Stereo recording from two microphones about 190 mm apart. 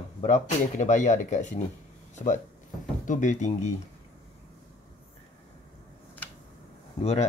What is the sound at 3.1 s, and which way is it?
Speech, 40° left (ahead or behind).